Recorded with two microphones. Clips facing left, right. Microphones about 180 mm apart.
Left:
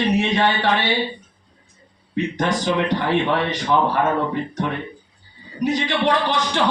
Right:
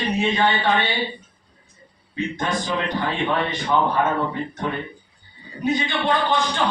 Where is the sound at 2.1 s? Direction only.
85° left.